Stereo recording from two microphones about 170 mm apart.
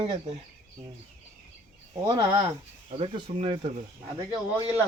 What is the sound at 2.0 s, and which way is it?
A man's voice, 25° right (ahead or behind).